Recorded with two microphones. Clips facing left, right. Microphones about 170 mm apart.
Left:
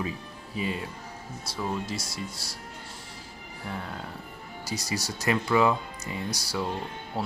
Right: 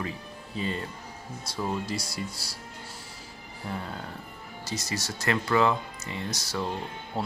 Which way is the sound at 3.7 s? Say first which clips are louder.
Right 1 dB; centre (ahead or behind).